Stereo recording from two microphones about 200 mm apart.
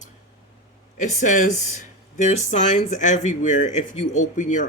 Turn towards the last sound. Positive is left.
turn(degrees=40)  # may be behind; listen again after turning